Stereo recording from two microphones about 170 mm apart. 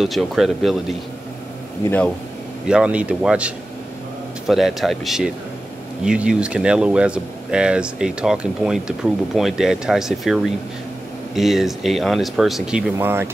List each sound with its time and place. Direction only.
0.0 s speech: centre (ahead or behind)
1.8 s speech: 15° left (ahead or behind)
2.7 s speech: 5° right (ahead or behind)
12.9 s speech: 15° right (ahead or behind)